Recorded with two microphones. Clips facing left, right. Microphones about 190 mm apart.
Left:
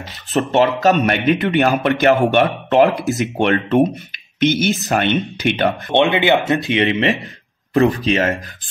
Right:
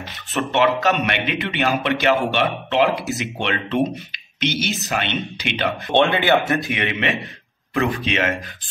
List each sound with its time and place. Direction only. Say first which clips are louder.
0.3 s a man's voice: left 4 dB; 40° left (ahead or behind)
5.9 s speech: left 2 dB; 20° left (ahead or behind); by 8.4 s 40° left (ahead or behind)